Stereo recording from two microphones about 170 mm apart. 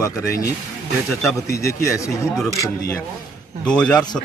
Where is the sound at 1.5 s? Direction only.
20° left (ahead or behind).